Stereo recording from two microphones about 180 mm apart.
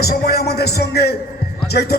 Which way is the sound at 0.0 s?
60° left (ahead or behind).